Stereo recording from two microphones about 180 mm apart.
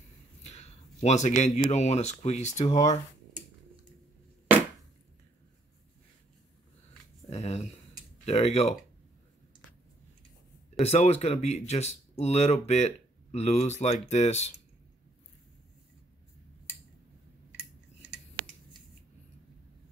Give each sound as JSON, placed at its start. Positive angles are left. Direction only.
{"t": 0.4, "sound": "speech", "side_deg": 35}
{"t": 7.2, "sound": "a sound", "side_deg": 35}
{"t": 8.3, "sound": "speech", "side_deg": 35}
{"t": 10.8, "sound": "speech", "side_deg": 35}